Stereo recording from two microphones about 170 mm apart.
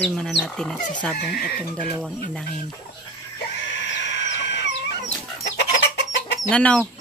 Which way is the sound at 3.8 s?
90° left.